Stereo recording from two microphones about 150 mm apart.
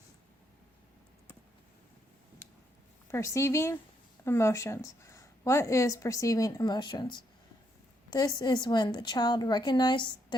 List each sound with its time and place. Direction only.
3.1 s a woman's voice: 20° left (ahead or behind)
8.4 s a woman's voice: 25° left (ahead or behind)